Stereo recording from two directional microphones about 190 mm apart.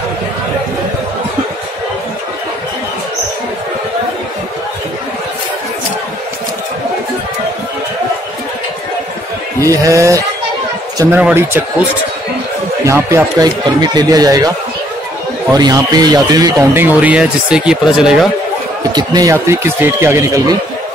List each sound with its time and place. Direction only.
9.6 s speech: 15° right (ahead or behind)
12.8 s speech: 15° right (ahead or behind)
15.5 s speech: 20° right (ahead or behind); by 18.3 s 5° right (ahead or behind)
18.9 s speech: 20° right (ahead or behind)